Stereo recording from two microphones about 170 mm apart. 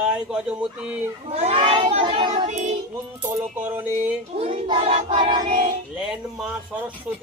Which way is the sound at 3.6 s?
10° right (ahead or behind).